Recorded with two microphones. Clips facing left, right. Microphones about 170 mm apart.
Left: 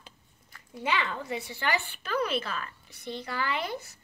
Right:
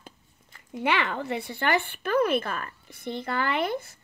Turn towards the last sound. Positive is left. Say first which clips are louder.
# right 5 dB
turn(degrees=-55)  # may be behind; listen again after turning